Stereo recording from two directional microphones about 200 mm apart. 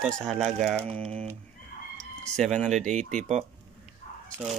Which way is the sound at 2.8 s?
35° right (ahead or behind).